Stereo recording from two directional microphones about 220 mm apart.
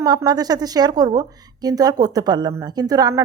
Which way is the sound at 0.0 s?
15° right (ahead or behind).